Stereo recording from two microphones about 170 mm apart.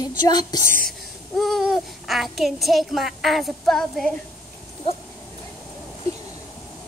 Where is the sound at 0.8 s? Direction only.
Centre (ahead or behind).